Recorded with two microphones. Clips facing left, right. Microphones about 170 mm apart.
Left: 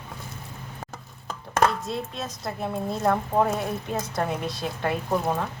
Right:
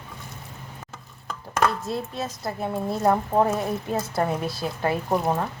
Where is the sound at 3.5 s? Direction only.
5° right (ahead or behind).